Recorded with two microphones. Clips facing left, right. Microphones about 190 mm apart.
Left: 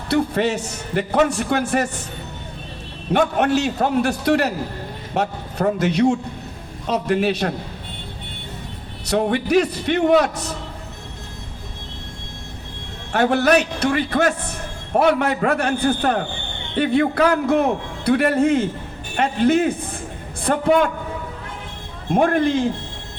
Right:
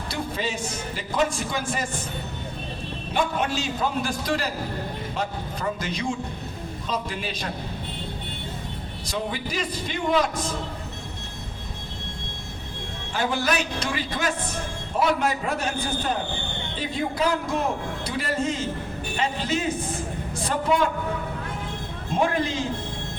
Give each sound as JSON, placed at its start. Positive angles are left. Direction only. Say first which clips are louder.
{"t": 0.1, "sound": "a man's voice", "louder": "left 11 dB", "side_deg": 70}
{"t": 3.1, "sound": "a man's voice", "louder": "left 8 dB", "side_deg": 65}
{"t": 9.0, "sound": "a man's voice", "louder": "left 11 dB", "side_deg": 65}
{"t": 13.1, "sound": "a man's voice", "louder": "left 9 dB", "side_deg": 65}
{"t": 22.1, "sound": "a man's voice", "louder": "left 7 dB", "side_deg": 55}